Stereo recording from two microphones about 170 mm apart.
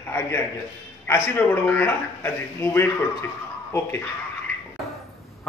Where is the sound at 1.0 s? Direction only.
15° left (ahead or behind).